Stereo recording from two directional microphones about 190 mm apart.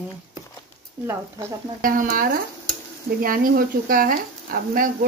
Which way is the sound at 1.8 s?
45° right (ahead or behind).